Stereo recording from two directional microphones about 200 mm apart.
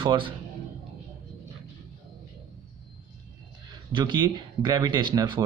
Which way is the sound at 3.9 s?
20° right (ahead or behind).